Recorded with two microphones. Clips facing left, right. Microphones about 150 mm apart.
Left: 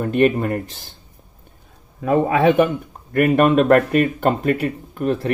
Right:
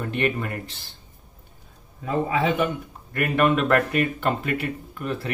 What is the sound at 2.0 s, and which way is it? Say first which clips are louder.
Speech: left 7 dB; 55° left (ahead or behind).